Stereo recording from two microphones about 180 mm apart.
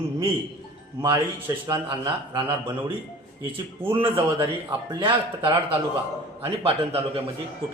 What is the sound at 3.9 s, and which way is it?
A man's voice, 30° right (ahead or behind).